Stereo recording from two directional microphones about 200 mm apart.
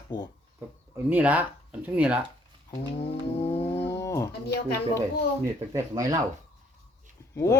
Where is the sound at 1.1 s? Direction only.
10° right (ahead or behind).